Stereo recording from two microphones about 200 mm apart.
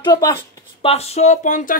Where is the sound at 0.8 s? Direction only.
30° left (ahead or behind).